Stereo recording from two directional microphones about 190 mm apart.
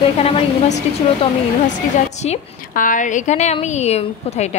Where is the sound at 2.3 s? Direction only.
45° left (ahead or behind).